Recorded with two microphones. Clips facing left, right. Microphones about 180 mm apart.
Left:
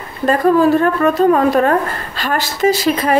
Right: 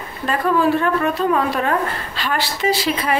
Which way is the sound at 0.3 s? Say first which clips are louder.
Left 6 dB; 45° left (ahead or behind).